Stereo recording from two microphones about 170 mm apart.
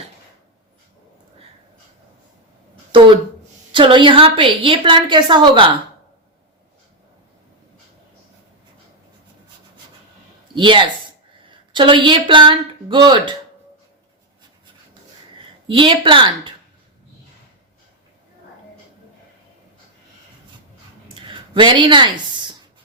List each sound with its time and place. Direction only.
3.7 s a woman's voice: 30° right (ahead or behind)
10.5 s speech: 30° right (ahead or behind)
15.6 s a woman's voice: 30° right (ahead or behind)
21.2 s speech: 30° right (ahead or behind)